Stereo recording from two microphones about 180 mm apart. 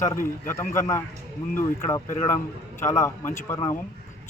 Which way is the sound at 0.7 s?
15° left (ahead or behind).